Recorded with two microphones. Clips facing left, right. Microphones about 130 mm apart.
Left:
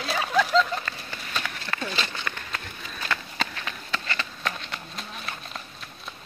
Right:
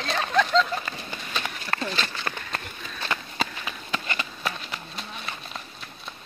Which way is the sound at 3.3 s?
10° right (ahead or behind).